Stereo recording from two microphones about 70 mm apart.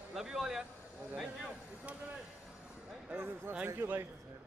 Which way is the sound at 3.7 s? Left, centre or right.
Right.